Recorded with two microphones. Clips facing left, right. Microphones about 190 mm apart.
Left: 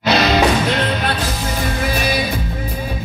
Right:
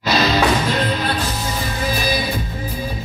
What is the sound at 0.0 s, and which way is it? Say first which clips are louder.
Music: left 2 dB; 70° left (ahead or behind).